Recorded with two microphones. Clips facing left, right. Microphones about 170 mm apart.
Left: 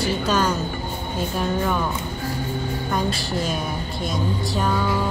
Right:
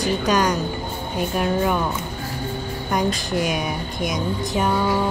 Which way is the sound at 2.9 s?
15° right (ahead or behind).